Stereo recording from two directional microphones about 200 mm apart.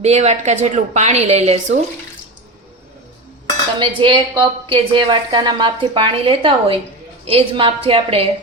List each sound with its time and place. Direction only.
0.0 s a woman's voice: 35° right (ahead or behind)
3.8 s a woman's voice: 25° right (ahead or behind)